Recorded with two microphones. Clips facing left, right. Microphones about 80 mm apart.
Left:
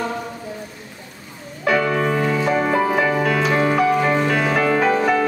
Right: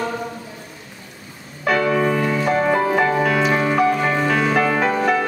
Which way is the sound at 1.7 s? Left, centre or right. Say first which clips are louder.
Right 1 dB; centre.